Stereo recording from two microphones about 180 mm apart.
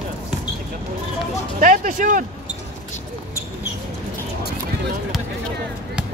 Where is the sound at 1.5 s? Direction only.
50° right (ahead or behind).